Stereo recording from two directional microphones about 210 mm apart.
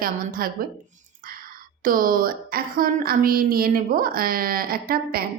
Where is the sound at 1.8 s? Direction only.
40° right (ahead or behind).